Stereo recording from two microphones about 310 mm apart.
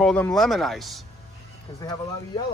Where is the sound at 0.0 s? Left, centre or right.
Centre.